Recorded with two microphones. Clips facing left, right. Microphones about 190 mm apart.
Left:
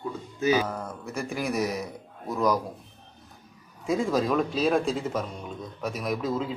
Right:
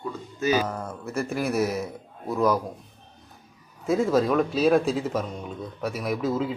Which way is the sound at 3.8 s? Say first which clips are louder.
Right 3 dB; 5° right (ahead or behind).